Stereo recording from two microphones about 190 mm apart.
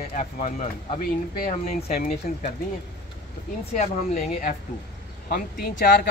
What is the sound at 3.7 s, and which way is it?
Speech, 35° left (ahead or behind).